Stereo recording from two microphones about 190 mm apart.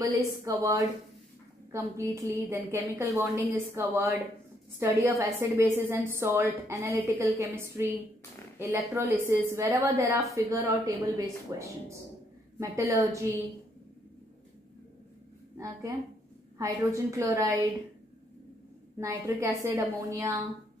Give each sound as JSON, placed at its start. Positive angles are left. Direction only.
{"t": 0.0, "sound": "a woman's voice", "side_deg": -15}
{"t": 15.5, "sound": "a woman's voice", "side_deg": -15}
{"t": 18.9, "sound": "a woman's voice", "side_deg": -15}